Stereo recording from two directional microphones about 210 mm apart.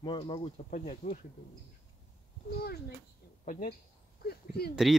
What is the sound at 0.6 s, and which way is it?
Speech, 40° left (ahead or behind).